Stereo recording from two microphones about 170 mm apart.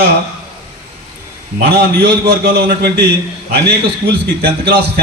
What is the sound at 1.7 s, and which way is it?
A man's voice, 70° right (ahead or behind).